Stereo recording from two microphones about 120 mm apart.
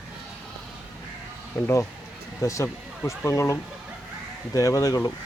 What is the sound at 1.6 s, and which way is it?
Speech, 25° left (ahead or behind).